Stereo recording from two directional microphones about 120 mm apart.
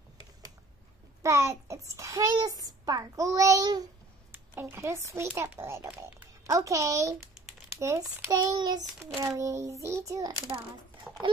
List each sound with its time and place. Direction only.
1.2 s a child's voice: 25° right (ahead or behind)
4.3 s a child's voice: 15° right (ahead or behind)
11.1 s horse: 5° right (ahead or behind)